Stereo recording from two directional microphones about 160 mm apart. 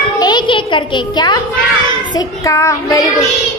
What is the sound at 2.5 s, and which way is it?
Speech, 20° left (ahead or behind).